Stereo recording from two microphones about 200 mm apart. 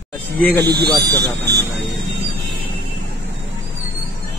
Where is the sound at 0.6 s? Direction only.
55° right (ahead or behind).